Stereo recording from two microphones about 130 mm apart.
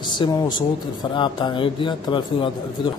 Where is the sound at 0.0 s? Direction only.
35° left (ahead or behind).